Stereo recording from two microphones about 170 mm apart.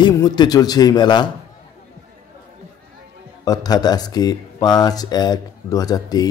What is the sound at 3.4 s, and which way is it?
Speech, 25° left (ahead or behind).